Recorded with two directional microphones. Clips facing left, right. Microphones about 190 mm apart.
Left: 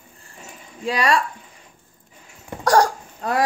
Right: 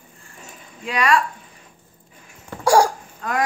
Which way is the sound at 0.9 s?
35° left (ahead or behind).